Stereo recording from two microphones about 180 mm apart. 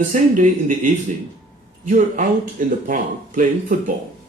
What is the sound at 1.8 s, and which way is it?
Speech, 45° right (ahead or behind).